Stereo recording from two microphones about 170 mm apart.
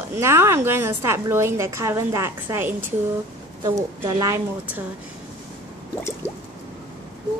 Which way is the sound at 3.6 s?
25° right (ahead or behind).